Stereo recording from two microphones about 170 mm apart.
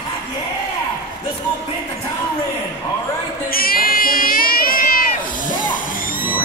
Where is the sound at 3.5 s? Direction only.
60° left (ahead or behind).